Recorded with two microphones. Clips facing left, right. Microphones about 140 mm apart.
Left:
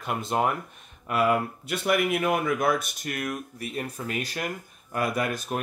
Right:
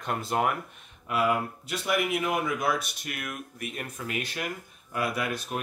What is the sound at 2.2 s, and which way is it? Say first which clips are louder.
Speech: left 4 dB; 50° left (ahead or behind).